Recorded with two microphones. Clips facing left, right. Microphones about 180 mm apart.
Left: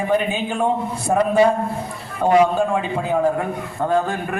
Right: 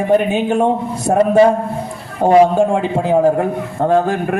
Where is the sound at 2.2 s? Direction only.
40° right (ahead or behind).